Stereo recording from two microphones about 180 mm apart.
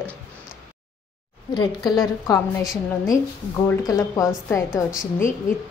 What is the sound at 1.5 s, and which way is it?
Speech, 25° left (ahead or behind).